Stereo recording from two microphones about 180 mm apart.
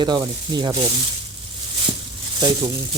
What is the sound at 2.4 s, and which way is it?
Speech, 25° right (ahead or behind).